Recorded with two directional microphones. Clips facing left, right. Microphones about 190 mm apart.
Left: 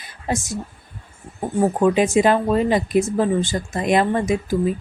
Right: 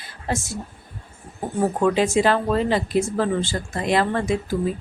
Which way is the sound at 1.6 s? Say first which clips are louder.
Left 3 dB; 15° left (ahead or behind).